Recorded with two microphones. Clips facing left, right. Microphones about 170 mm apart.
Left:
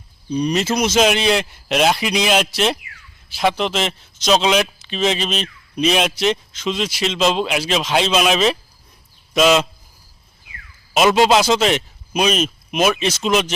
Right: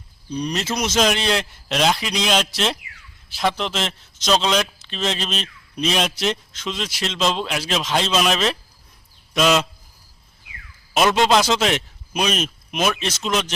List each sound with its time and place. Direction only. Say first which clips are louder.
0.3 s a man's voice: left 6 dB; 5° left (ahead or behind)
10.9 s a man's voice: left 3 dB; 5° left (ahead or behind)